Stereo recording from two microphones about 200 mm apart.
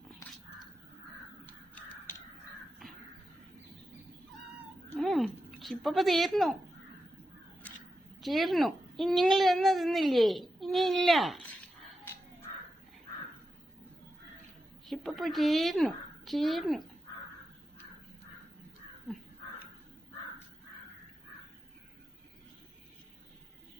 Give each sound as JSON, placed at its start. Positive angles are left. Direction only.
{"t": 4.9, "sound": "a sound", "side_deg": 0}
{"t": 8.2, "sound": "a child's voice", "side_deg": 0}
{"t": 14.8, "sound": "a woman's voice", "side_deg": 0}